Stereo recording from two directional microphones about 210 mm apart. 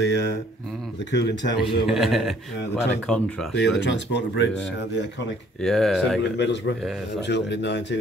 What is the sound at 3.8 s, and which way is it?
Speech, 55° left (ahead or behind).